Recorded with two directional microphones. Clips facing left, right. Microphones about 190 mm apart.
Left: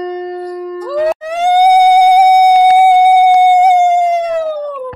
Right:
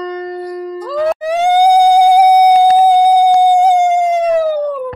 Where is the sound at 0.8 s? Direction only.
10° left (ahead or behind).